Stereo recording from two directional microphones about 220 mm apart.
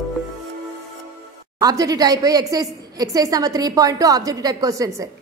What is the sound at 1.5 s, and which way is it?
A woman's voice, 15° right (ahead or behind).